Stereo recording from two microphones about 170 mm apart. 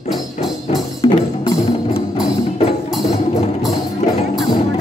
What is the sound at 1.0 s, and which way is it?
Music, 30° left (ahead or behind).